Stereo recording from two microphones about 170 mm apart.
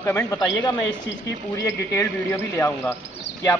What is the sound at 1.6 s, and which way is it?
A man's voice, 15° left (ahead or behind).